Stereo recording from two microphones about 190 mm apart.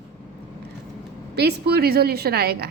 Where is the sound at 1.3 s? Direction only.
60° right (ahead or behind).